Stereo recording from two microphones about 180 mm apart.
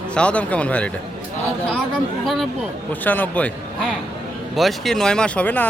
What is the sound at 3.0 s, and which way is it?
Speech, 10° left (ahead or behind).